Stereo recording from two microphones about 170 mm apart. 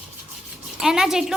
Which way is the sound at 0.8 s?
5° right (ahead or behind).